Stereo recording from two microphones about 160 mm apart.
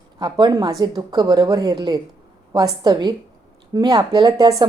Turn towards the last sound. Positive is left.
turn(degrees=-25)  # may be behind; listen again after turning